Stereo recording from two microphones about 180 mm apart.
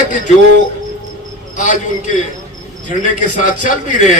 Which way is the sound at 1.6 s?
45° left (ahead or behind).